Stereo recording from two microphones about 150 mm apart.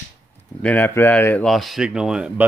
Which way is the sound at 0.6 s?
10° left (ahead or behind).